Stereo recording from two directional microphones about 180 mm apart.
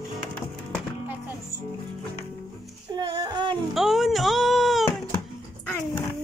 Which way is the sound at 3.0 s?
25° right (ahead or behind).